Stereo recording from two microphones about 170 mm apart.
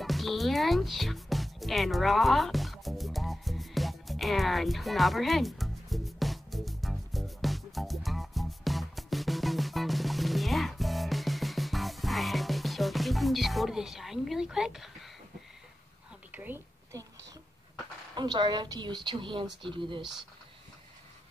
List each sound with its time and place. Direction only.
0.0 s music: centre (ahead or behind)
16.3 s whispering: 10° right (ahead or behind)
18.1 s speech: 25° right (ahead or behind)